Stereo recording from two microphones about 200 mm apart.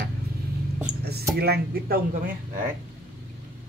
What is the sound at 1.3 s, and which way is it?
Speech, 50° right (ahead or behind).